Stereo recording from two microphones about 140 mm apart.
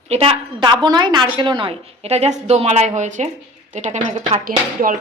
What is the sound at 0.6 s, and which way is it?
A woman's voice, 35° right (ahead or behind).